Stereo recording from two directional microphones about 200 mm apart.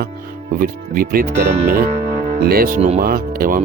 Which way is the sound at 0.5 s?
45° right (ahead or behind).